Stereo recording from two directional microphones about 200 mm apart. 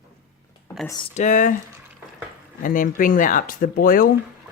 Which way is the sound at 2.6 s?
45° left (ahead or behind).